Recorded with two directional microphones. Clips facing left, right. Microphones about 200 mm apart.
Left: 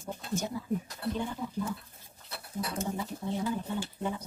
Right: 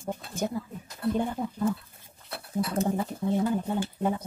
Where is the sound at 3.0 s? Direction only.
55° right (ahead or behind).